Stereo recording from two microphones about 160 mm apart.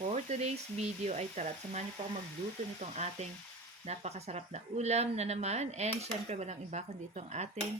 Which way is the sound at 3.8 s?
45° right (ahead or behind).